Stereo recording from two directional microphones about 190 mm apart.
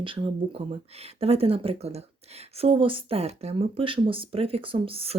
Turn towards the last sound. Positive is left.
turn(degrees=-30)  # may be behind; listen again after turning